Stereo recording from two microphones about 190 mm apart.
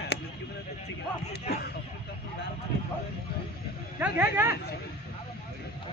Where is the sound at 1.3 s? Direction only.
60° left (ahead or behind).